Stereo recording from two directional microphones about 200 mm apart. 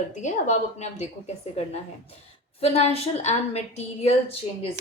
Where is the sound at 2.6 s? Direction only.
30° left (ahead or behind).